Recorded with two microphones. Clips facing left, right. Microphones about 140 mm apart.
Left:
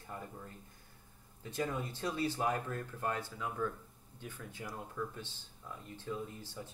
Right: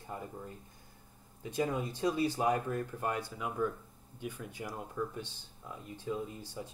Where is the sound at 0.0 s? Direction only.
20° right (ahead or behind).